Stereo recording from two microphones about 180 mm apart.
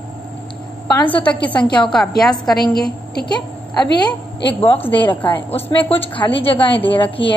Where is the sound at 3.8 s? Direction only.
25° left (ahead or behind).